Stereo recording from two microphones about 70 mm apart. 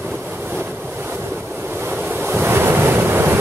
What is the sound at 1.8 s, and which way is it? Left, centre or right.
Waves, right.